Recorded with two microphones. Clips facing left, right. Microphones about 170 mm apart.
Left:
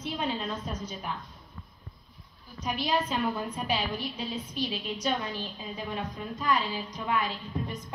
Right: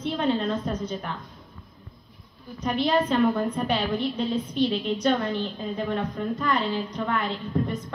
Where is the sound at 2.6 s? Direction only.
60° right (ahead or behind).